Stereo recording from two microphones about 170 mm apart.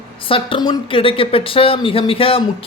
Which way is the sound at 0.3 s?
30° left (ahead or behind).